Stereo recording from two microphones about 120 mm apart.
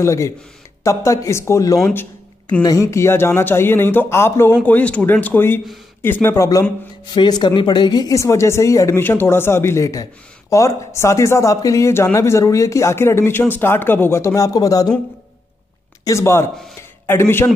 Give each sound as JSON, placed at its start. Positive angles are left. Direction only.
{"t": 0.0, "sound": "speech", "side_deg": 25}
{"t": 7.2, "sound": "speech", "side_deg": 35}
{"t": 16.0, "sound": "a man's voice", "side_deg": 25}